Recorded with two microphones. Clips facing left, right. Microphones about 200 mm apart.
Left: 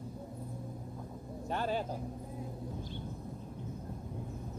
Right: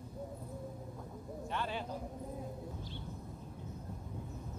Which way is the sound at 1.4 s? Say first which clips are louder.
Left 6 dB; 40° left (ahead or behind).